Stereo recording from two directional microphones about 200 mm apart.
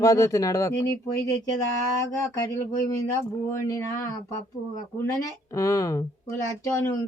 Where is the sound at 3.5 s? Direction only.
15° left (ahead or behind).